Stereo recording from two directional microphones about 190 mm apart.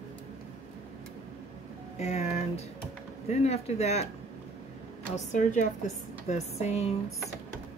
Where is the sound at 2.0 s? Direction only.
35° left (ahead or behind).